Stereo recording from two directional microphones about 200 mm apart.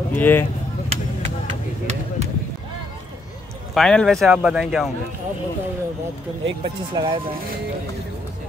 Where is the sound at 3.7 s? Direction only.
5° left (ahead or behind).